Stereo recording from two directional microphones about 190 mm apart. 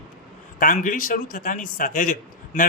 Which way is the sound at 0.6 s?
45° left (ahead or behind).